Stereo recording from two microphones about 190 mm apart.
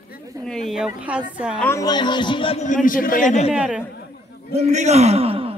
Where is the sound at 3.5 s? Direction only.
5° right (ahead or behind).